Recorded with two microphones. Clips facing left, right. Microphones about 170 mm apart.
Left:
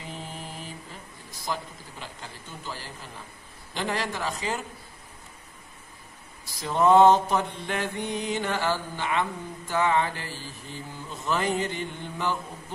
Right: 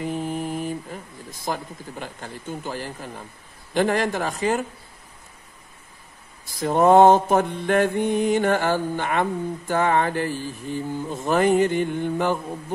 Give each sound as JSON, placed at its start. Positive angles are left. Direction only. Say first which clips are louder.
{"t": 0.0, "sound": "mantra", "louder": "right 12 dB", "side_deg": -50}
{"t": 6.4, "sound": "mantra", "louder": "right 5 dB", "side_deg": -50}